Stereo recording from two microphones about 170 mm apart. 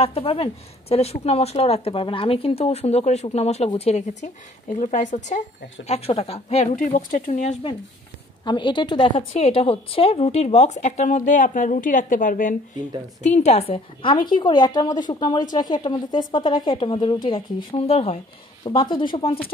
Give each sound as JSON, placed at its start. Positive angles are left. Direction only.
{"t": 0.0, "sound": "a woman's voice", "side_deg": 35}
{"t": 8.5, "sound": "a woman's voice", "side_deg": 30}
{"t": 13.2, "sound": "a woman's voice", "side_deg": 40}
{"t": 18.6, "sound": "a woman's voice", "side_deg": 25}